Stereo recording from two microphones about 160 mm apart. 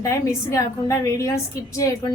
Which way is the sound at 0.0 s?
20° left (ahead or behind).